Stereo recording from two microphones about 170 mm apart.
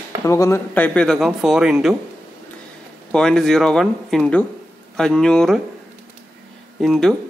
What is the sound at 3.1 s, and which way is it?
Speech, 5° left (ahead or behind).